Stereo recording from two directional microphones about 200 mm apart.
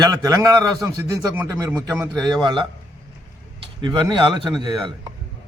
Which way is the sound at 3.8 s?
25° right (ahead or behind).